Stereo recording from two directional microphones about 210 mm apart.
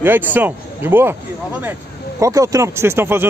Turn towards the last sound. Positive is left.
turn(degrees=-10)  # may be behind; listen again after turning